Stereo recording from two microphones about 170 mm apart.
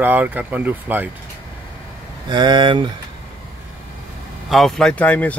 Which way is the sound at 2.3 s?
25° right (ahead or behind).